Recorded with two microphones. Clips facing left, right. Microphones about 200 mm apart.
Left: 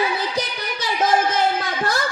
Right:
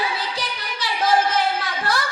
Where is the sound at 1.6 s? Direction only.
45° left (ahead or behind).